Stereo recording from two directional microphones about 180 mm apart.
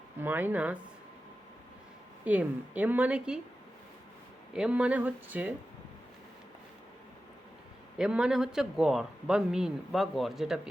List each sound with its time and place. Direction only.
0.2 s a woman's voice: 10° right (ahead or behind)
2.2 s a woman's voice: 5° right (ahead or behind)
4.5 s a woman's voice: 5° right (ahead or behind)
7.9 s a man's voice: 5° right (ahead or behind)